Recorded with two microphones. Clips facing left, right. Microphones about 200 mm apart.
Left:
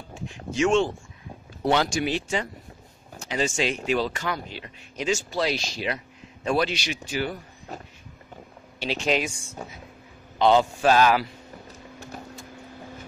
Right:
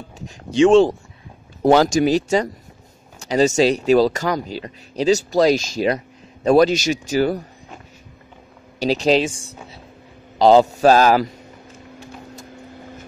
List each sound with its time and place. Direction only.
0.1 s speech: 35° right (ahead or behind)
8.7 s speech: 40° right (ahead or behind)
10.4 s speech: 40° right (ahead or behind)